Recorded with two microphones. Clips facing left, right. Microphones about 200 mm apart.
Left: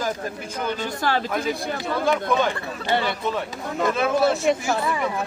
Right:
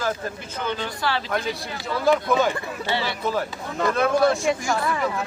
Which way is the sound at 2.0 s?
5° right (ahead or behind).